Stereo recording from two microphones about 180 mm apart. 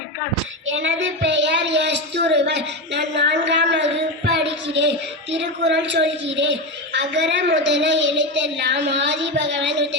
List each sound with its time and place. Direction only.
0.7 s a woman's voice: 90° right